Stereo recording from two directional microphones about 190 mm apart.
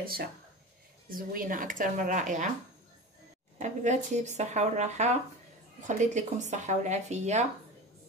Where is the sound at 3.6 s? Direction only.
40° right (ahead or behind).